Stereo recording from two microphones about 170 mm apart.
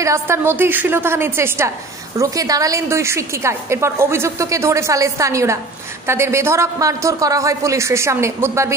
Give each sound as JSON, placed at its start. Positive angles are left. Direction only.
{"t": 0.0, "sound": "a woman's voice", "side_deg": -15}